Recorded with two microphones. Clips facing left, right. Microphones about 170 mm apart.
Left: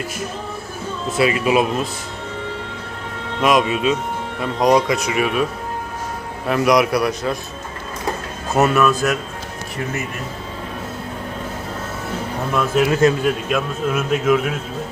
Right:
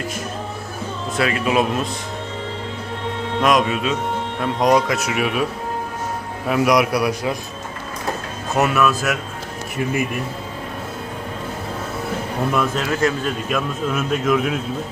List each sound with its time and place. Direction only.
1.5 s speech: 5° left (ahead or behind)
3.4 s speech: centre (ahead or behind)
6.5 s speech: 5° right (ahead or behind)
8.5 s speech: centre (ahead or behind)
12.7 s a man's voice: 20° left (ahead or behind)
13.2 s speech: 5° left (ahead or behind)